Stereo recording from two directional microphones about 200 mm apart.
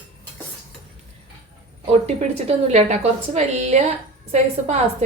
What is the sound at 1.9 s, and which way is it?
A woman's voice, 30° right (ahead or behind).